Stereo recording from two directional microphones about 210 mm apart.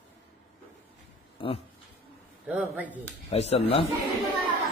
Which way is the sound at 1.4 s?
25° left (ahead or behind).